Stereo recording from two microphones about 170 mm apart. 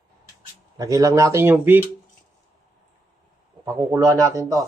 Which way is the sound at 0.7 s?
20° right (ahead or behind).